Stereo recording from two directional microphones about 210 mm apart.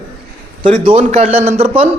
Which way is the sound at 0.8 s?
30° right (ahead or behind).